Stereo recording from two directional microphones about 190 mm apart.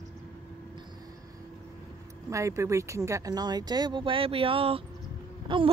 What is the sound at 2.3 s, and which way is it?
Speech, 15° right (ahead or behind).